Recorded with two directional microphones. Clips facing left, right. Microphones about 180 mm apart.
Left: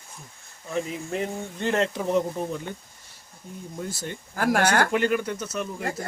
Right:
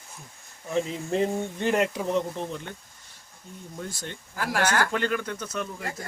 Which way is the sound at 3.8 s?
5° left (ahead or behind).